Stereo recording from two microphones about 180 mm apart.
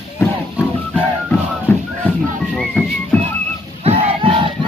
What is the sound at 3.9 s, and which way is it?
Battle cry, 30° right (ahead or behind).